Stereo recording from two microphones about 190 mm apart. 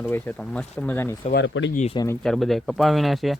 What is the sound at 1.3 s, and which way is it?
Speech, 75° left (ahead or behind).